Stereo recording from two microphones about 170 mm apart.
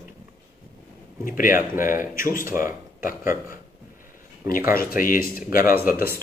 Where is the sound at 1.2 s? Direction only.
55° left (ahead or behind).